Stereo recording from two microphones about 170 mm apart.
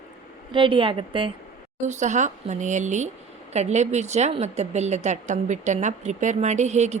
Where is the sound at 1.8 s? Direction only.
45° right (ahead or behind).